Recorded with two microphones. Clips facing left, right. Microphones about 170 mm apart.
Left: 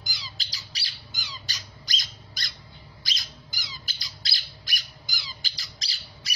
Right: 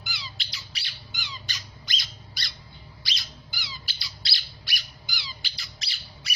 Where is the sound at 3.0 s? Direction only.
45° left (ahead or behind).